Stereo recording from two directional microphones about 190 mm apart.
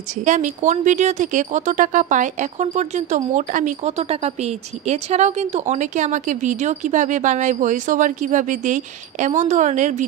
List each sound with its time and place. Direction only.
0.2 s speech: 40° right (ahead or behind)